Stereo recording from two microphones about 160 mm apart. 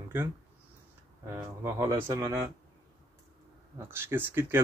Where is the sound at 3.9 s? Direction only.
15° right (ahead or behind).